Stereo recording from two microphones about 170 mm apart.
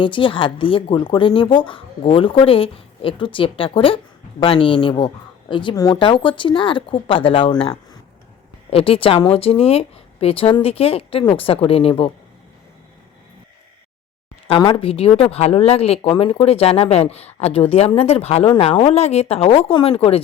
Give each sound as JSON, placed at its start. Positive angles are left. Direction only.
{"t": 0.0, "sound": "a woman's voice", "side_deg": 30}
{"t": 14.4, "sound": "a woman's voice", "side_deg": 35}